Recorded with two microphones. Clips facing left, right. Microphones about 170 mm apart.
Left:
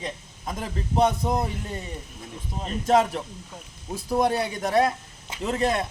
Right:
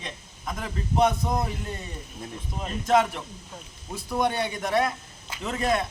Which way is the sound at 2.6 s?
35° left (ahead or behind).